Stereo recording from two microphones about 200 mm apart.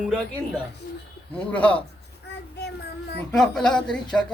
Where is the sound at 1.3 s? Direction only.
5° left (ahead or behind).